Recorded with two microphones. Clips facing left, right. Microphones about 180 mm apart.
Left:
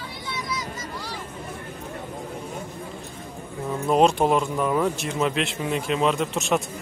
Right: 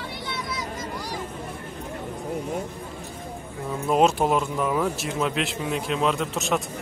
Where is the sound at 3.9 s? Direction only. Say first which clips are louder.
Left 1 dB; 5° right (ahead or behind).